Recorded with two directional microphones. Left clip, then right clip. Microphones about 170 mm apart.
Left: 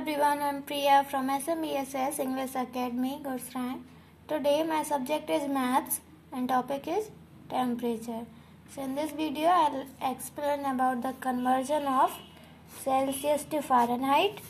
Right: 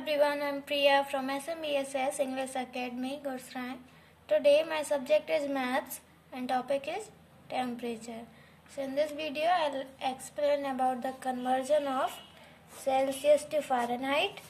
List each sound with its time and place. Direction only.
0.0 s speech: 20° left (ahead or behind)
13.5 s speech: 10° left (ahead or behind)